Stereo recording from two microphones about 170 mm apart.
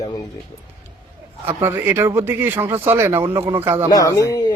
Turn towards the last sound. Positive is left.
turn(degrees=20)  # may be behind; listen again after turning